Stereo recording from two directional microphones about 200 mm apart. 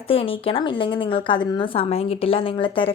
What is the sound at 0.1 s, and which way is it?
A woman's voice, 25° left (ahead or behind).